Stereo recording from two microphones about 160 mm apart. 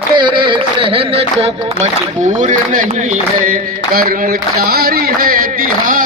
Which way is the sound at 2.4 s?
55° right (ahead or behind).